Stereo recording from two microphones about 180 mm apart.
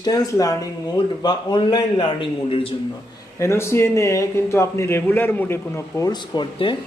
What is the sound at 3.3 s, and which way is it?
A man's voice, 15° left (ahead or behind).